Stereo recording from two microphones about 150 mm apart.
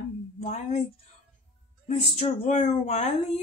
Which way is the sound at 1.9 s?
45° left (ahead or behind).